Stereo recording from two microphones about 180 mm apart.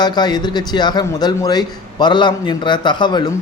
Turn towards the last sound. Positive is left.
turn(degrees=25)  # may be behind; listen again after turning